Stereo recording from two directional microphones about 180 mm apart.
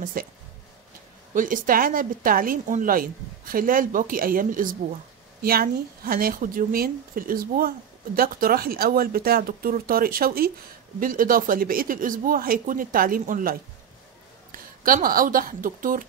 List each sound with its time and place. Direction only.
0.0 s a woman's voice: 55° right (ahead or behind)
1.3 s a woman's voice: 45° right (ahead or behind)